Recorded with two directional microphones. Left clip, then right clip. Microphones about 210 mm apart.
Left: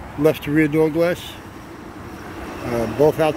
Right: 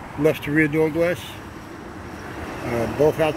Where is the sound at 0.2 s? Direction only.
20° left (ahead or behind).